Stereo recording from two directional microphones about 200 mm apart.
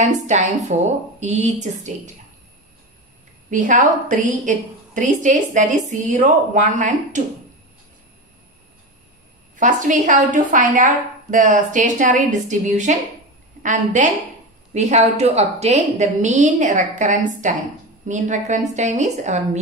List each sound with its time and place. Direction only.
0.0 s a woman's voice: 35° right (ahead or behind)
3.4 s a woman's voice: 40° right (ahead or behind)
9.6 s a woman's voice: 40° right (ahead or behind)